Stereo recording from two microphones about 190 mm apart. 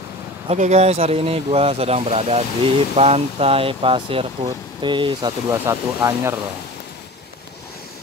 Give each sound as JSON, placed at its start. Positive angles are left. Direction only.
{"t": 0.5, "sound": "speech", "side_deg": -35}